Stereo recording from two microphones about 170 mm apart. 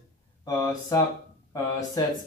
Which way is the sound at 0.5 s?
20° left (ahead or behind).